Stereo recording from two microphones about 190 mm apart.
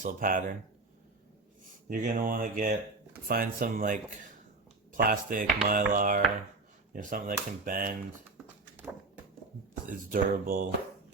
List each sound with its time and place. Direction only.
0.0 s speech: 45° right (ahead or behind)
1.9 s speech: 45° right (ahead or behind)
9.8 s speech: 45° right (ahead or behind)